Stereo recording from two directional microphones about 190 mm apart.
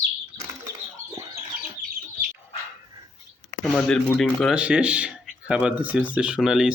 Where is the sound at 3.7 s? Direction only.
Centre (ahead or behind).